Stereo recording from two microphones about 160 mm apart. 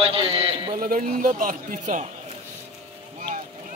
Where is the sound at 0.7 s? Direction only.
55° right (ahead or behind).